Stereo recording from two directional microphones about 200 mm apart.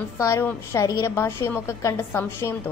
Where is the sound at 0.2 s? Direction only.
15° left (ahead or behind).